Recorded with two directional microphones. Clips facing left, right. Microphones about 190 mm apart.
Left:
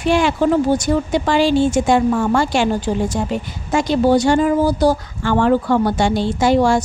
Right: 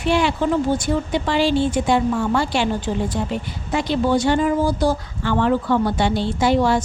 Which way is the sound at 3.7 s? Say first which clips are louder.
Left 5 dB; 45° left (ahead or behind).